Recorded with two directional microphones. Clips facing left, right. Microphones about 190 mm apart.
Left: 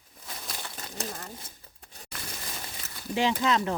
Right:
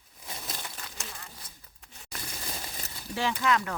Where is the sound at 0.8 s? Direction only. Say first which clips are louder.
Left 7 dB; 40° left (ahead or behind).